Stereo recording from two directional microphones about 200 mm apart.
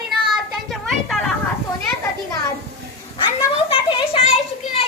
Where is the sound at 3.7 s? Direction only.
25° left (ahead or behind).